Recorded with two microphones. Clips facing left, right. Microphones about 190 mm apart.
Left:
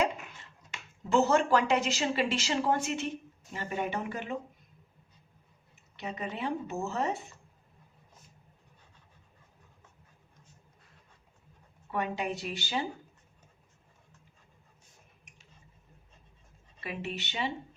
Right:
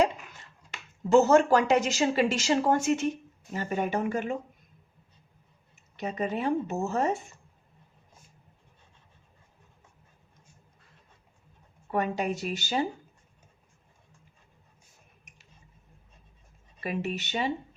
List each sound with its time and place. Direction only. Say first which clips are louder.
1.1 s a woman's voice: right 5 dB; 45° right (ahead or behind)
6.0 s a woman's voice: right 6 dB; 45° right (ahead or behind)
11.9 s a woman's voice: right 4 dB; 45° right (ahead or behind)
16.8 s a woman's voice: right 6 dB; 45° right (ahead or behind)